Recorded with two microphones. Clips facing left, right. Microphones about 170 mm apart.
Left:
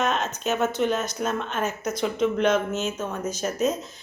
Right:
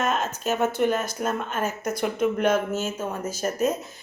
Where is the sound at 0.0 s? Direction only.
5° right (ahead or behind).